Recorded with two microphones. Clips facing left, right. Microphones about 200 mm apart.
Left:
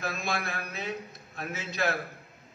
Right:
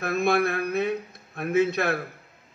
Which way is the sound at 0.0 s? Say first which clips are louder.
Right 10 dB; 60° right (ahead or behind).